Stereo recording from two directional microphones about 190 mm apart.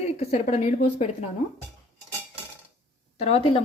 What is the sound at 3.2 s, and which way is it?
Speech, 30° left (ahead or behind).